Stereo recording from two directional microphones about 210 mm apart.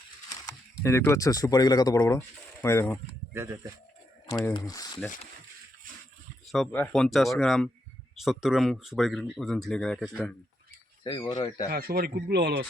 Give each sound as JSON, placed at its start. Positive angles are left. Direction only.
{"t": 0.3, "sound": "speech", "side_deg": 15}
{"t": 3.3, "sound": "speech", "side_deg": -15}
{"t": 4.4, "sound": "speech", "side_deg": 15}
{"t": 6.5, "sound": "speech", "side_deg": 5}
{"t": 11.0, "sound": "speech", "side_deg": 20}
{"t": 11.7, "sound": "a man's voice", "side_deg": -45}